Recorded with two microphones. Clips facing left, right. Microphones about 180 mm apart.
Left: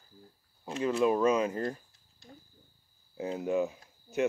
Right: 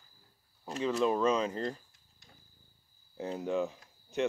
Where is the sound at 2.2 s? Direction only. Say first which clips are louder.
Left 11 dB; 30° left (ahead or behind).